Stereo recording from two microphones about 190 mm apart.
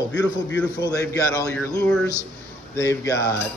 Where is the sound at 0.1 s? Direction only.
70° left (ahead or behind).